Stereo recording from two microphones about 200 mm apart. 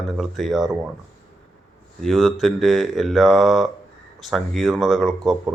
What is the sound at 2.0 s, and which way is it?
Speech, centre (ahead or behind).